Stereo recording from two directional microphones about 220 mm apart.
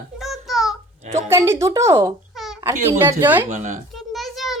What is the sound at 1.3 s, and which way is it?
Speech, 10° right (ahead or behind).